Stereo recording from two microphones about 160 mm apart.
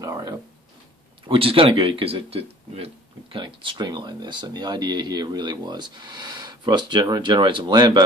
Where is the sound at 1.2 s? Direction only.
35° right (ahead or behind).